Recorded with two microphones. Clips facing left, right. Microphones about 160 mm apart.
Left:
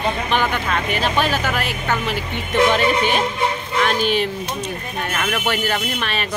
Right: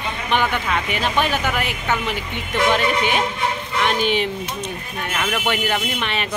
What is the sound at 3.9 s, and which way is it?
Speech, 20° right (ahead or behind).